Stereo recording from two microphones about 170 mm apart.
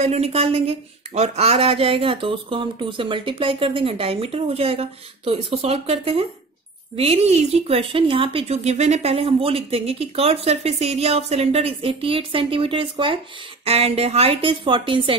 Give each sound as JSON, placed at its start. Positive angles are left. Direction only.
{"t": 0.0, "sound": "speech", "side_deg": -40}